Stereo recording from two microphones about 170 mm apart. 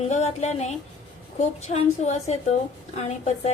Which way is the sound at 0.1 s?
40° left (ahead or behind).